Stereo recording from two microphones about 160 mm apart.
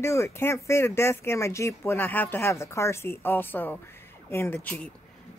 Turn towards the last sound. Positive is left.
turn(degrees=10)  # may be behind; listen again after turning